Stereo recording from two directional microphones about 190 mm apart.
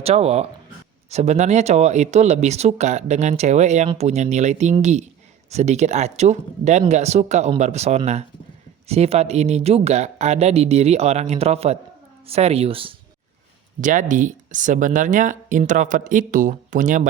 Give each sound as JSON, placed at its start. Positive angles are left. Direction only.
{"t": 0.0, "sound": "speech", "side_deg": -35}
{"t": 13.8, "sound": "speech", "side_deg": -45}